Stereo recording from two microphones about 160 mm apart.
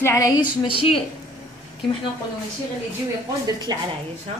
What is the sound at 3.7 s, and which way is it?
Speech, 25° right (ahead or behind).